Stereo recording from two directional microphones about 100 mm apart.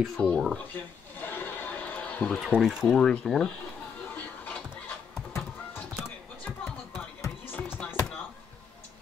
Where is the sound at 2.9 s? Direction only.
10° left (ahead or behind).